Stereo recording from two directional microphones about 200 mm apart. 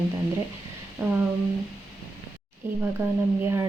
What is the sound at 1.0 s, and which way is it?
Speech, 10° right (ahead or behind).